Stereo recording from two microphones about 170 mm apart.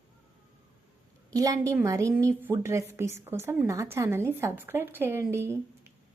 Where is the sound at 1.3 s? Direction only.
20° right (ahead or behind).